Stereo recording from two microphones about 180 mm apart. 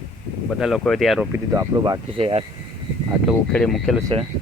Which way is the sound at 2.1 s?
30° right (ahead or behind).